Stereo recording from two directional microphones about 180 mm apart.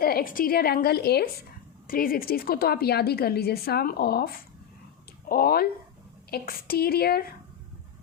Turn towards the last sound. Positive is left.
turn(degrees=55)  # may be behind; listen again after turning